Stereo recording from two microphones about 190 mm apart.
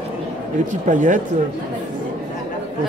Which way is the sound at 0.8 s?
40° right (ahead or behind).